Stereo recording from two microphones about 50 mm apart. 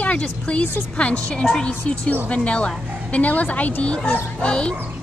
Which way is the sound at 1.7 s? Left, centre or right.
Left.